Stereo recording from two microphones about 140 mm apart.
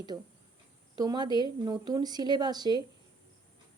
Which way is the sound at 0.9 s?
30° right (ahead or behind).